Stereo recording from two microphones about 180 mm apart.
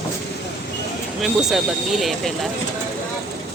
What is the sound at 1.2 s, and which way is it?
Speech, centre (ahead or behind).